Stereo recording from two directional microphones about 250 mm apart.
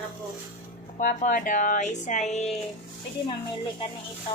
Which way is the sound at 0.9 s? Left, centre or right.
Left.